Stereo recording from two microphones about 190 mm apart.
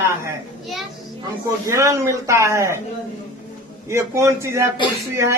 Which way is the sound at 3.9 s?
15° right (ahead or behind).